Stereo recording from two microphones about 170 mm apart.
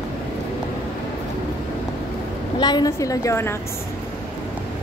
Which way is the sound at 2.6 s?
25° left (ahead or behind).